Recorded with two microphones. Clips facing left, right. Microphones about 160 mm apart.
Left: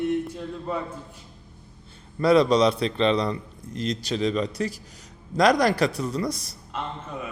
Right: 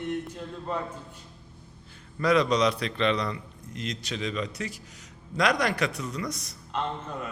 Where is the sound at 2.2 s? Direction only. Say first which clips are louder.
Left 5 dB; 30° left (ahead or behind).